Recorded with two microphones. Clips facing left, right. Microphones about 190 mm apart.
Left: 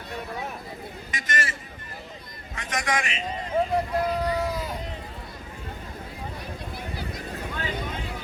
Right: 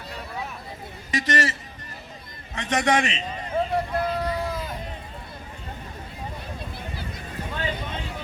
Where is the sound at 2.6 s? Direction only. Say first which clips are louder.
Right 6 dB; 35° right (ahead or behind).